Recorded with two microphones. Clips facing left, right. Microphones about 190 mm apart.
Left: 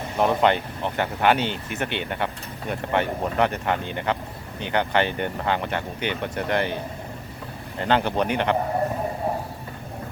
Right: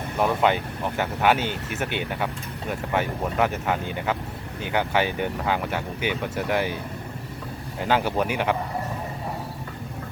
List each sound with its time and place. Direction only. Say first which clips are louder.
0.2 s speech: left 2 dB; 5° right (ahead or behind)
7.8 s speech: left 1 dB; 5° right (ahead or behind)